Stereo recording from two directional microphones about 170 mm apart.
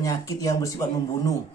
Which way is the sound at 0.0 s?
20° left (ahead or behind).